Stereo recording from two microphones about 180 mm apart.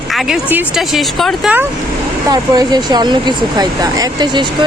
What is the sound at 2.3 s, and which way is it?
Speech, 20° right (ahead or behind).